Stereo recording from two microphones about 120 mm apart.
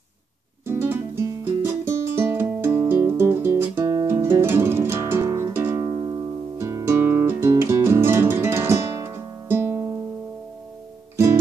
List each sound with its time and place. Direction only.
0.7 s music: 20° right (ahead or behind)